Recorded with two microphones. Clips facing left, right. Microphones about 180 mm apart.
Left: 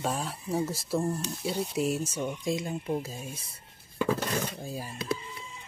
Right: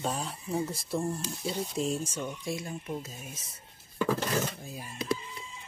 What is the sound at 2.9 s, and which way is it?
Speech, 30° left (ahead or behind).